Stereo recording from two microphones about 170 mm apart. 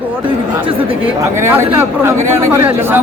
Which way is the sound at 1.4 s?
15° right (ahead or behind).